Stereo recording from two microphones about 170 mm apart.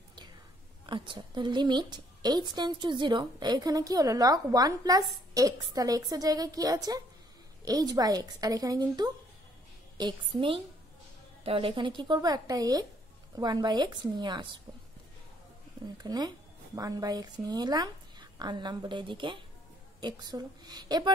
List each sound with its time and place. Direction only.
0.8 s a woman's voice: 30° right (ahead or behind)
16.0 s a woman's voice: 25° right (ahead or behind)